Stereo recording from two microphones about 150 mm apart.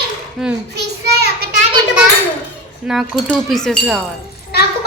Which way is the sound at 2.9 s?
5° right (ahead or behind).